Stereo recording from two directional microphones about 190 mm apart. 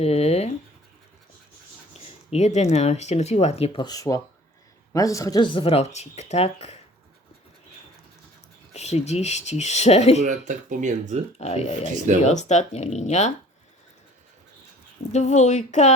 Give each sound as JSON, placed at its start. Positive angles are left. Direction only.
{"t": 0.0, "sound": "speech", "side_deg": 35}
{"t": 1.9, "sound": "speech", "side_deg": 35}
{"t": 8.7, "sound": "speech", "side_deg": 35}
{"t": 10.2, "sound": "speech", "side_deg": -40}
{"t": 11.3, "sound": "speech", "side_deg": 35}
{"t": 15.1, "sound": "speech", "side_deg": 40}